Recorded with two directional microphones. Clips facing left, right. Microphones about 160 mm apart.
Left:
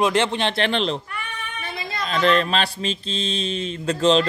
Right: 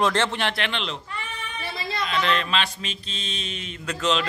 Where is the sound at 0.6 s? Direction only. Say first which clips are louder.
Left 8 dB; 35° left (ahead or behind).